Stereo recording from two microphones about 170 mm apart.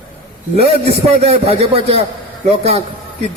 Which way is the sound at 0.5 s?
40° right (ahead or behind).